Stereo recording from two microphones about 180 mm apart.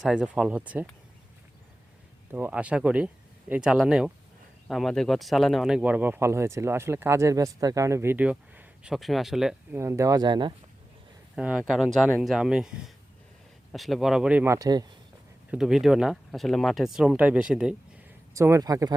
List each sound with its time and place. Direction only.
0.0 s speech: 5° right (ahead or behind)
2.3 s speech: 10° right (ahead or behind)
9.7 s speech: 15° right (ahead or behind)
11.3 s speech: 5° right (ahead or behind)
13.7 s speech: centre (ahead or behind); by 14.8 s 20° right (ahead or behind)
15.4 s speech: 5° right (ahead or behind)
18.3 s speech: 15° right (ahead or behind)